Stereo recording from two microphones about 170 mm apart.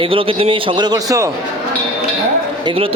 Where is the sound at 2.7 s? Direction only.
35° right (ahead or behind).